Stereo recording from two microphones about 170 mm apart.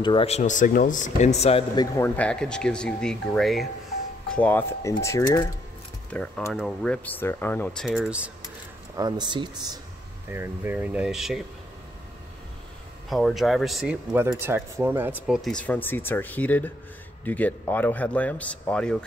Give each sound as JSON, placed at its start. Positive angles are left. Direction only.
{"t": 0.0, "sound": "speech", "side_deg": 30}
{"t": 2.1, "sound": "speech", "side_deg": 5}
{"t": 6.0, "sound": "speech", "side_deg": 5}
{"t": 8.9, "sound": "speech", "side_deg": -25}
{"t": 10.3, "sound": "speech", "side_deg": -15}
{"t": 13.1, "sound": "speech", "side_deg": 0}
{"t": 14.4, "sound": "speech", "side_deg": -10}